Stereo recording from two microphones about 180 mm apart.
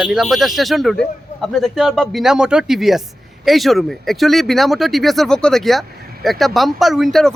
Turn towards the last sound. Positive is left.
turn(degrees=0)  # may be behind; listen again after turning